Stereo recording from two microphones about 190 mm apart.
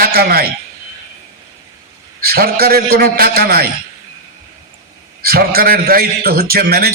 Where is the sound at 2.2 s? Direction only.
50° right (ahead or behind).